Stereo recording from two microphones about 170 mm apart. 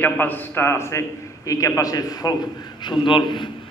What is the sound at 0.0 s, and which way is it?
A man's voice, 10° left (ahead or behind).